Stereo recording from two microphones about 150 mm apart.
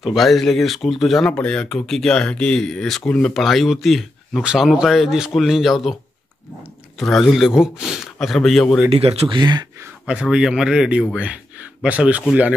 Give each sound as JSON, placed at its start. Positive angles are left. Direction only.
{"t": 0.0, "sound": "speech", "side_deg": 0}
{"t": 7.0, "sound": "speech", "side_deg": 0}
{"t": 8.9, "sound": "speech", "side_deg": -40}
{"t": 9.4, "sound": "speech", "side_deg": -30}
{"t": 10.0, "sound": "speech", "side_deg": -5}